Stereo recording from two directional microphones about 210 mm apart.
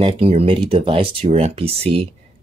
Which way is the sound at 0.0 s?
25° right (ahead or behind).